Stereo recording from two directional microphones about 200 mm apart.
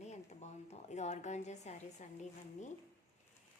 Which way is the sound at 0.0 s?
35° left (ahead or behind).